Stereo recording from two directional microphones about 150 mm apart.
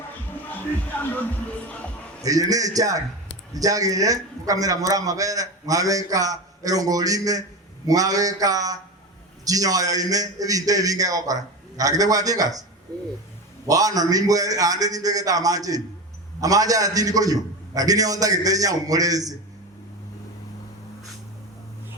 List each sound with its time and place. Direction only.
1.6 s speech: 10° left (ahead or behind)
2.2 s a man's voice: 25° right (ahead or behind)
13.7 s a man's voice: 25° right (ahead or behind)